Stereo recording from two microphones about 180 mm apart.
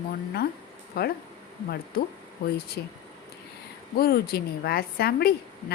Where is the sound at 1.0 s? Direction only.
60° left (ahead or behind).